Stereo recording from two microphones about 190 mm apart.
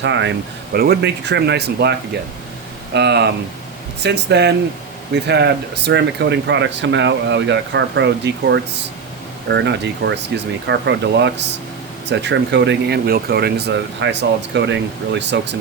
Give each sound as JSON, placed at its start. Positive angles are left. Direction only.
{"t": 0.0, "sound": "speech", "side_deg": -70}